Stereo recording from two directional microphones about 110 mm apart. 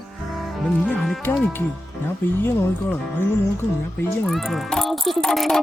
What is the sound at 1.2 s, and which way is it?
Music, 20° left (ahead or behind).